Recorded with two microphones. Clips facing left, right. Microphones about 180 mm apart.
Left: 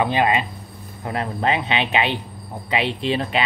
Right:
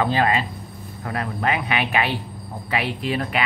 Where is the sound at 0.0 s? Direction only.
20° left (ahead or behind).